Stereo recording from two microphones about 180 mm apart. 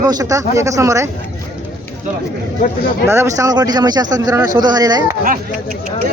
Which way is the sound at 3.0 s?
15° right (ahead or behind).